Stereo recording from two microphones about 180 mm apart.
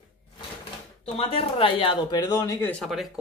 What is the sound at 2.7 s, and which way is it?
Speech, centre (ahead or behind).